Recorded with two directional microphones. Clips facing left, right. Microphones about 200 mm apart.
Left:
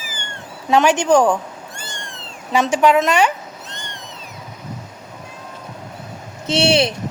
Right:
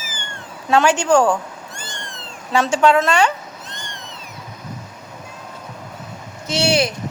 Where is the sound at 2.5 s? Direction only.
15° left (ahead or behind).